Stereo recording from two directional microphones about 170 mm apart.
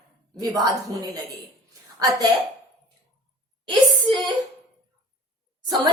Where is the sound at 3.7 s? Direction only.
25° right (ahead or behind).